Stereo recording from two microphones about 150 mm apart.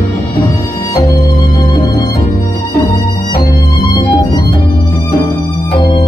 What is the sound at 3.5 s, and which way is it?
Violin, 25° left (ahead or behind).